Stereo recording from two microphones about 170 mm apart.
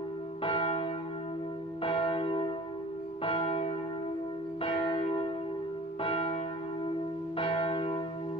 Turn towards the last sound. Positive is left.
turn(degrees=30)  # may be behind; listen again after turning